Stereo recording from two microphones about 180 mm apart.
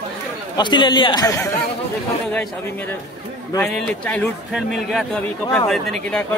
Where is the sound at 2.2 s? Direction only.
5° left (ahead or behind).